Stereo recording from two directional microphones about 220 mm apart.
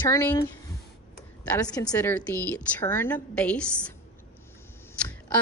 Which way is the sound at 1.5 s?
15° left (ahead or behind).